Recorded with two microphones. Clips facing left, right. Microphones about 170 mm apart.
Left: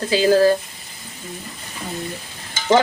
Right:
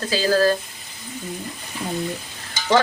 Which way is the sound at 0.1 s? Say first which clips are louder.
Left 4 dB; 20° left (ahead or behind).